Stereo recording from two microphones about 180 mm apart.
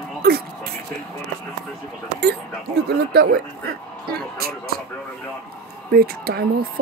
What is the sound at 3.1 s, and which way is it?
Speech, 60° right (ahead or behind).